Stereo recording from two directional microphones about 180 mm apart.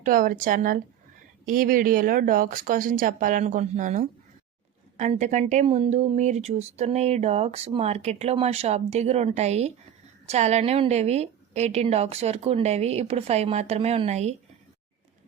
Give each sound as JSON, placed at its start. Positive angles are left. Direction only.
{"t": 0.0, "sound": "speech", "side_deg": -50}